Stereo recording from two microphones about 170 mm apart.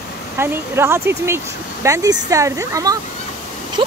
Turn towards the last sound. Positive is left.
turn(degrees=-30)  # may be behind; listen again after turning